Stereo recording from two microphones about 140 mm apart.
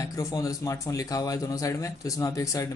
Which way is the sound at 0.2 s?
25° left (ahead or behind).